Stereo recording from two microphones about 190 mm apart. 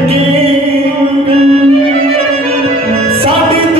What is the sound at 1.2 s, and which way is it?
Music, 35° right (ahead or behind).